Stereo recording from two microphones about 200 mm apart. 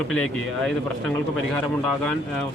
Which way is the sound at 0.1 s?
Centre (ahead or behind).